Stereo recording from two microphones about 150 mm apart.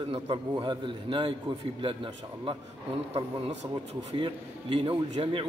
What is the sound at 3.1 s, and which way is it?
A man's voice, 45° right (ahead or behind).